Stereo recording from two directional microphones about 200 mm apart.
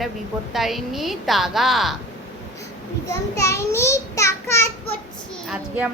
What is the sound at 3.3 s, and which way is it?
A child's voice, 15° left (ahead or behind).